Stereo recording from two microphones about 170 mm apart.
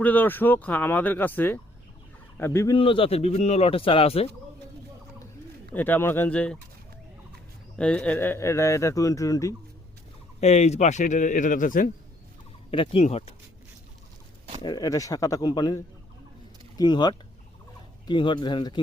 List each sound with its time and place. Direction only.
0.0 s speech: 10° left (ahead or behind)
2.7 s a man's voice: 30° left (ahead or behind)
5.7 s speech: 10° left (ahead or behind)
7.8 s speech: 5° left (ahead or behind)
10.4 s a man's voice: 40° left (ahead or behind)
12.7 s a man's voice: 30° left (ahead or behind)
14.6 s speech: 20° left (ahead or behind)